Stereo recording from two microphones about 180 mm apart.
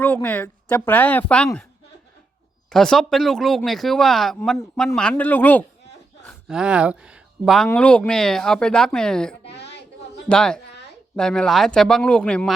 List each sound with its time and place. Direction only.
0.0 s speech: 10° left (ahead or behind)
2.6 s speech: 5° left (ahead or behind)
6.2 s speech: 5° right (ahead or behind)
9.5 s a sound: 70° left (ahead or behind)
10.2 s speech: 5° left (ahead or behind)